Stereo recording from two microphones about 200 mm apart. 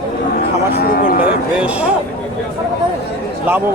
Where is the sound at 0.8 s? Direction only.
45° left (ahead or behind).